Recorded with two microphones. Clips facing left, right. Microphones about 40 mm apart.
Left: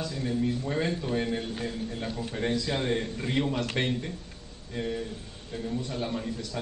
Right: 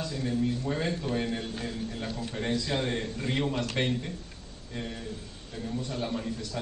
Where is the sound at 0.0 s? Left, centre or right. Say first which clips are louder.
Even; centre.